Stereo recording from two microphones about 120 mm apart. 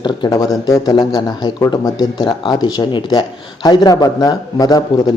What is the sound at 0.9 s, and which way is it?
Speech, 40° left (ahead or behind).